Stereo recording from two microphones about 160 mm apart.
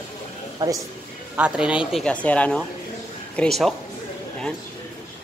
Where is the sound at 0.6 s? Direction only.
25° right (ahead or behind).